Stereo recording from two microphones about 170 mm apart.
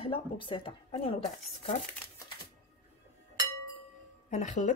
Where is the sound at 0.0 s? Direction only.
30° left (ahead or behind).